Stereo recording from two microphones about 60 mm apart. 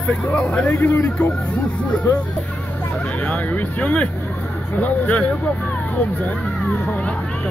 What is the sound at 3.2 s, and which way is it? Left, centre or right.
Speech, left.